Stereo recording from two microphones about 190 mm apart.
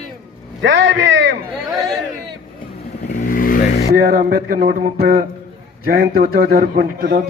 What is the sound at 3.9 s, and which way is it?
A man's voice, 50° right (ahead or behind).